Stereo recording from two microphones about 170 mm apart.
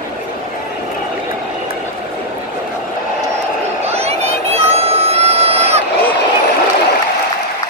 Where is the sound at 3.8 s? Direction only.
35° right (ahead or behind).